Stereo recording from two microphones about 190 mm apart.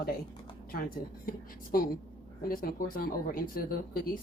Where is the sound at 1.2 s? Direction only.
50° left (ahead or behind).